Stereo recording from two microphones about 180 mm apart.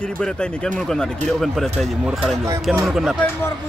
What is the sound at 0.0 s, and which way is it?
Speech, 5° left (ahead or behind).